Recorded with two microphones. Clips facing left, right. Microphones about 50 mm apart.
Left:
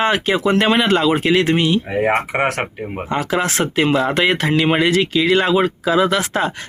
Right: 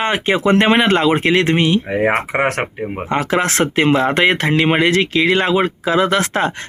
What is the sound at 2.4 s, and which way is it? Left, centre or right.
Speech, right.